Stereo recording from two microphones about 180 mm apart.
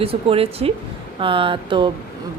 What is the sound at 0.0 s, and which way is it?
Speech, 30° right (ahead or behind).